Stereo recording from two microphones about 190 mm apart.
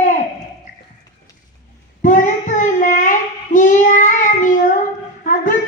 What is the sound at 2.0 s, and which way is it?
Child singing, 40° left (ahead or behind).